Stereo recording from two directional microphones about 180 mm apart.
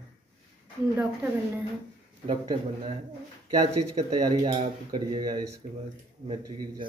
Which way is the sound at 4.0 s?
40° right (ahead or behind).